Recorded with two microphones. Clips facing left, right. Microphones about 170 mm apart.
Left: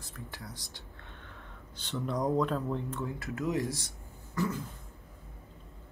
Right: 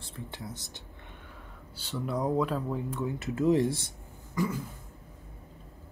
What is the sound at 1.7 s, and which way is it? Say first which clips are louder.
Speech: right 1 dB; 5° right (ahead or behind).